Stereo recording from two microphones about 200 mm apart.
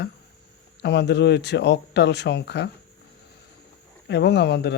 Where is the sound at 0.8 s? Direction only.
55° left (ahead or behind).